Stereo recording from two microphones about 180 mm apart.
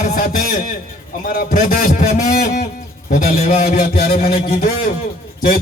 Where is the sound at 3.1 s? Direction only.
50° left (ahead or behind).